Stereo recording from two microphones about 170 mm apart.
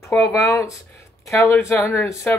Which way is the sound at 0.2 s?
15° left (ahead or behind).